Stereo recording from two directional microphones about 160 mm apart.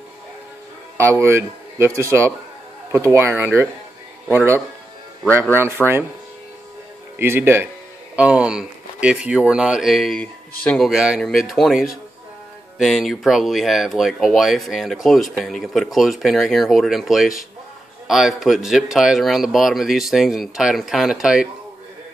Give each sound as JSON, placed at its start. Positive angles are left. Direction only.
{"t": 0.9, "sound": "speech", "side_deg": -15}
{"t": 7.2, "sound": "speech", "side_deg": -15}